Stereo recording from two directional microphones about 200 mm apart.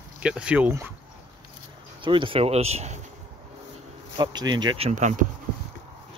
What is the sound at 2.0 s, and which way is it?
Speech, 25° right (ahead or behind).